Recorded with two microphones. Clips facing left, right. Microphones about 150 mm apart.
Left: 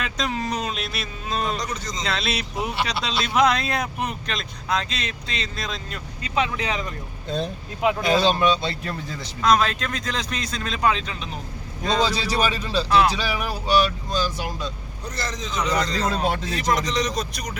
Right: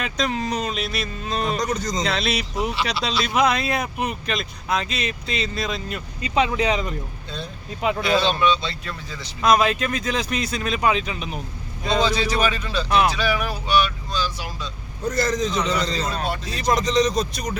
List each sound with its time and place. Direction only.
0.0 s speech: centre (ahead or behind)
1.5 s a man's voice: 45° right (ahead or behind)
2.0 s speech: centre (ahead or behind)
6.2 s speech: 20° right (ahead or behind)
8.0 s speech: 40° left (ahead or behind)
9.4 s speech: 10° right (ahead or behind)
11.9 s speech: 35° left (ahead or behind)
15.0 s a man's voice: 50° right (ahead or behind)
16.0 s speech: 90° left
16.5 s speech: 20° right (ahead or behind)